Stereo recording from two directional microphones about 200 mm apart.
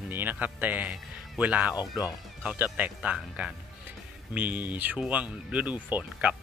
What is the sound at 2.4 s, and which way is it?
Speech, 10° right (ahead or behind).